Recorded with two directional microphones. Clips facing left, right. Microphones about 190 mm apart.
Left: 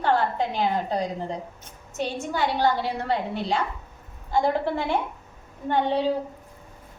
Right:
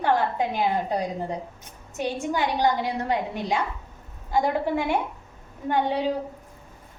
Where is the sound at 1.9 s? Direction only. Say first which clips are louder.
Right 1 dB; 15° right (ahead or behind).